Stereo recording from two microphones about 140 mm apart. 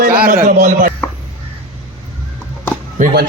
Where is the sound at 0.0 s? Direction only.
85° right.